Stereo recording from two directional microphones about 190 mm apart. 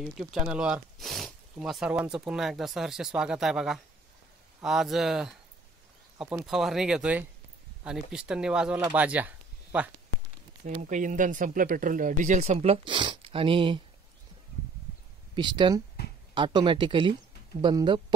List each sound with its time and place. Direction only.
0.0 s speech: centre (ahead or behind)
10.8 s speech: 40° right (ahead or behind); by 13.8 s 25° right (ahead or behind)
15.3 s speech: 25° right (ahead or behind)